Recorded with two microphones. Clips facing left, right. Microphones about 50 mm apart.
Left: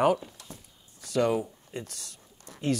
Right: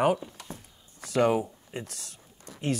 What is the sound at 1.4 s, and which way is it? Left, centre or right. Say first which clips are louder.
Speech: right 1 dB; centre.